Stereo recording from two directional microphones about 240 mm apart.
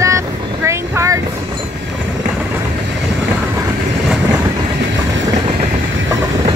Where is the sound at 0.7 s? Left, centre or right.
Centre.